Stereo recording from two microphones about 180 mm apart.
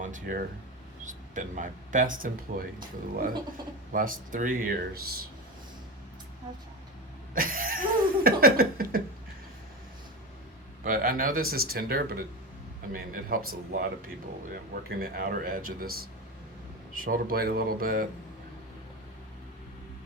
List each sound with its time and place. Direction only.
0.0 s speech: 50° right (ahead or behind)
7.3 s a sound: 50° right (ahead or behind)
10.8 s speech: 50° right (ahead or behind)